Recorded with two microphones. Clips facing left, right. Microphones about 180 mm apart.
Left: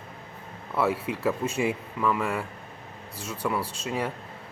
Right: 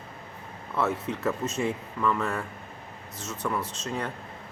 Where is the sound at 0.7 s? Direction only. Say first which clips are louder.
Left 2 dB; 10° left (ahead or behind).